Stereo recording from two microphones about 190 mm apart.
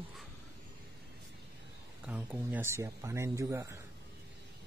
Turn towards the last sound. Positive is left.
turn(degrees=-15)  # may be behind; listen again after turning